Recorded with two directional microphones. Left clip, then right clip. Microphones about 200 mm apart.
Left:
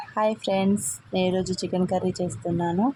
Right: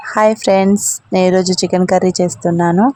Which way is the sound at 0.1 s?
25° right (ahead or behind).